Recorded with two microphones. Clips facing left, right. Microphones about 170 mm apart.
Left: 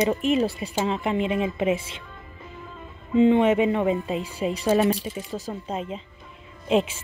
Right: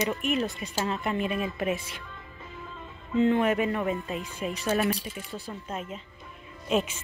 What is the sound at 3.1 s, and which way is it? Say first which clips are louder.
A woman's voice: left 5 dB; 15° left (ahead or behind).